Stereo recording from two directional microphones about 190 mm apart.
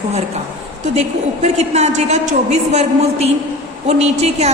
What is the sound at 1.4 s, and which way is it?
A woman's voice, 35° right (ahead or behind).